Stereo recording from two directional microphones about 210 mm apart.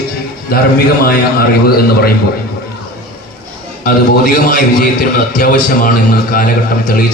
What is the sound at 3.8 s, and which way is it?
A man's voice, 40° left (ahead or behind).